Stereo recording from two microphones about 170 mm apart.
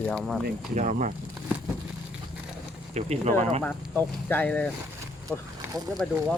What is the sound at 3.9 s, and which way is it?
Speech, 10° left (ahead or behind).